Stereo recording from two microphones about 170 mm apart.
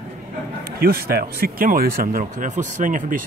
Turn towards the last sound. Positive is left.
turn(degrees=-50)  # may be behind; listen again after turning